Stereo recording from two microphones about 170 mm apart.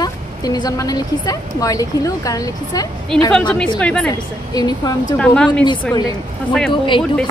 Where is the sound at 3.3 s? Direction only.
5° left (ahead or behind).